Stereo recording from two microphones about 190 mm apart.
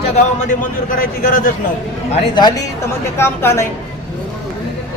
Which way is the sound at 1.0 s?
50° left (ahead or behind).